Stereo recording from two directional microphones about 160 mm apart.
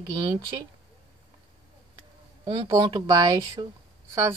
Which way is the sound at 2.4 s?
25° right (ahead or behind).